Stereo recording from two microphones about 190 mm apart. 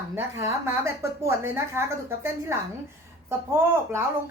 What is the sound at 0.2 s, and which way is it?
A woman's voice, 15° right (ahead or behind).